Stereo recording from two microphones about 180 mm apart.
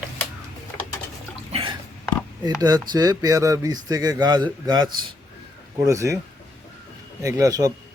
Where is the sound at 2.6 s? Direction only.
20° right (ahead or behind).